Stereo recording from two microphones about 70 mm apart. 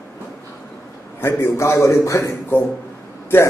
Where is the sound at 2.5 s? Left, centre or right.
Left.